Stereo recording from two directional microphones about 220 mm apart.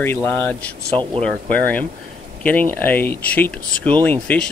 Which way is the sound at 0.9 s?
20° right (ahead or behind).